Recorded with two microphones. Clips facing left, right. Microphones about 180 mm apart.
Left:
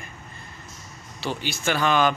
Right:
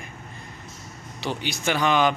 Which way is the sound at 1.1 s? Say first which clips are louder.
Even; 20° right (ahead or behind).